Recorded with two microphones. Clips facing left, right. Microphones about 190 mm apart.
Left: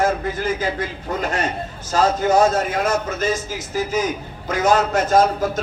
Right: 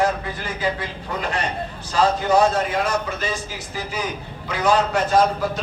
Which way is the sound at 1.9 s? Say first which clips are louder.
Left 1 dB; 45° left (ahead or behind).